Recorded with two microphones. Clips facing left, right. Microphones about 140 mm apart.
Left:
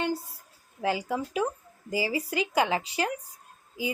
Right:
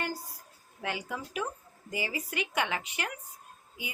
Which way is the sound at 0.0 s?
25° left (ahead or behind).